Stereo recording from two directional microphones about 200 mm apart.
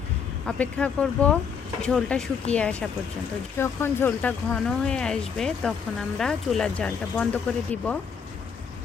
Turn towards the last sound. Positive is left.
turn(degrees=5)  # may be behind; listen again after turning